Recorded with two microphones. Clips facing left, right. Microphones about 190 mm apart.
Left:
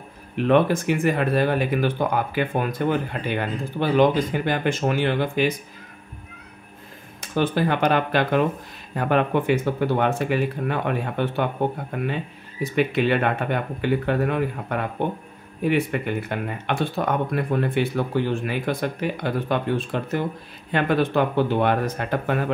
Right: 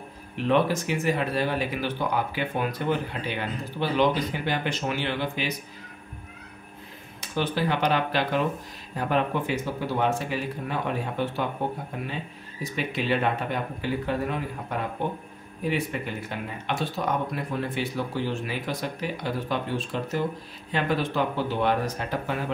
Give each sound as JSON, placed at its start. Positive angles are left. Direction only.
{"t": 0.5, "sound": "speech", "side_deg": 55}
{"t": 7.2, "sound": "speech", "side_deg": 50}
{"t": 12.7, "sound": "speech", "side_deg": 60}